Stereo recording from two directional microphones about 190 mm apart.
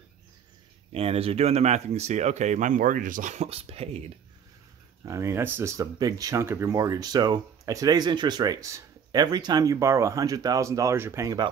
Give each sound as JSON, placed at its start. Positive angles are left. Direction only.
{"t": 0.9, "sound": "speech", "side_deg": -30}
{"t": 5.0, "sound": "speech", "side_deg": -15}